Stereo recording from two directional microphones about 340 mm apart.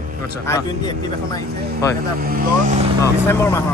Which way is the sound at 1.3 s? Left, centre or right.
Centre.